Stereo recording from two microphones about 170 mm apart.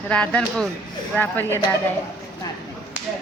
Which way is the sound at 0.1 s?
5° left (ahead or behind).